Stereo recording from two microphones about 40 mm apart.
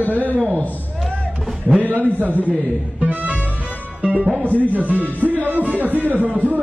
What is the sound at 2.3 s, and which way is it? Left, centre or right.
Speech, left.